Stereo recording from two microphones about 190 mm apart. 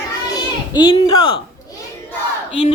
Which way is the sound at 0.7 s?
25° left (ahead or behind).